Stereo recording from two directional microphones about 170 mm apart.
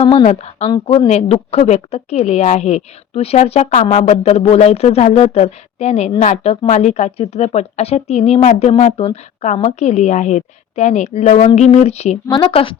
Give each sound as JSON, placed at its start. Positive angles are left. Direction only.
{"t": 0.0, "sound": "a woman's voice", "side_deg": 30}